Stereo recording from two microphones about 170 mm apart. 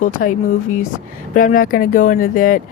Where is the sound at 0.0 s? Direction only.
50° left (ahead or behind).